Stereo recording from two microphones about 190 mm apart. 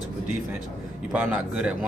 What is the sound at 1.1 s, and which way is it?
Speech, 5° right (ahead or behind).